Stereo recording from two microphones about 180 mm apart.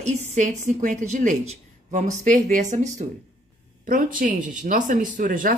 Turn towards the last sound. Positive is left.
turn(degrees=-50)  # may be behind; listen again after turning